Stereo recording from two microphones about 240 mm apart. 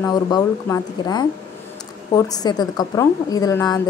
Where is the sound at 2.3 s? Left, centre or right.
Centre.